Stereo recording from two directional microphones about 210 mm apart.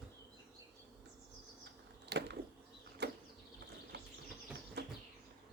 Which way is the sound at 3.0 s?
50° right (ahead or behind).